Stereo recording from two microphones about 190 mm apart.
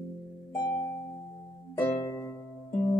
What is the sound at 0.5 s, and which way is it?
Music, 20° left (ahead or behind).